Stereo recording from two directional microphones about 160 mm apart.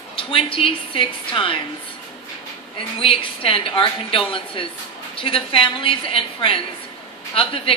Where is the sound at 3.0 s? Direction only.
35° left (ahead or behind).